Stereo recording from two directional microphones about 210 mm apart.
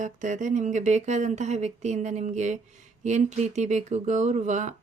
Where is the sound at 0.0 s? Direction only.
35° right (ahead or behind).